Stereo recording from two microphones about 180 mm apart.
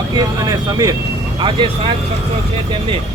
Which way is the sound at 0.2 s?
20° right (ahead or behind).